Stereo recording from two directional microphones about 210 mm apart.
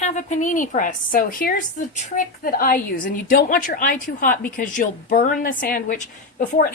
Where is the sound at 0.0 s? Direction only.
35° left (ahead or behind).